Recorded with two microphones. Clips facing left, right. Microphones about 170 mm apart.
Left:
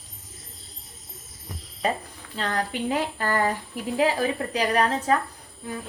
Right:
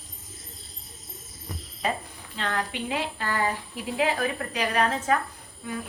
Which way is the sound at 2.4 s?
40° left (ahead or behind).